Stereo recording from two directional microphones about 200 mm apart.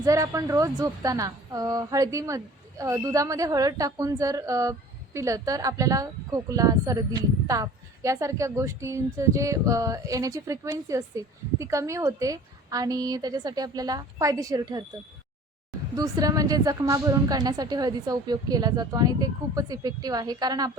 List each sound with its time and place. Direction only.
0.0 s speech: 15° right (ahead or behind)
16.0 s speech: 20° right (ahead or behind)